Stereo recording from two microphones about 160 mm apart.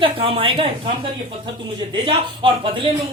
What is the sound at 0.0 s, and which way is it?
Speech, 35° right (ahead or behind).